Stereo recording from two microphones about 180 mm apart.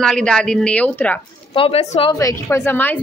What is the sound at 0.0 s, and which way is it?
A woman's voice, 5° left (ahead or behind).